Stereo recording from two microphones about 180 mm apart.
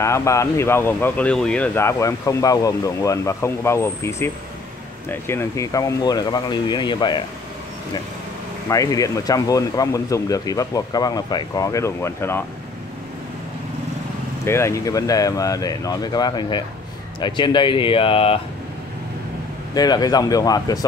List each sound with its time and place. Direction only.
0.0 s speech: 15° left (ahead or behind)
8.6 s speech: 20° left (ahead or behind)
14.4 s speech: 15° left (ahead or behind); by 18.4 s 30° left (ahead or behind)
19.7 s speech: 20° left (ahead or behind)